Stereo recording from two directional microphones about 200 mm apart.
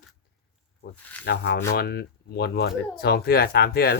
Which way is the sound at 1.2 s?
60° left (ahead or behind).